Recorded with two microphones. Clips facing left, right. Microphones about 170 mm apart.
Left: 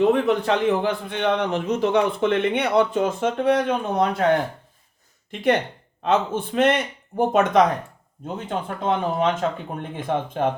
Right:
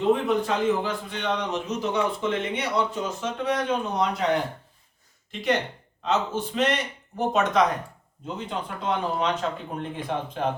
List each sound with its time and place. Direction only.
0.0 s a man's voice: 70° left (ahead or behind); by 4.3 s 55° left (ahead or behind)
5.3 s a man's voice: 55° left (ahead or behind)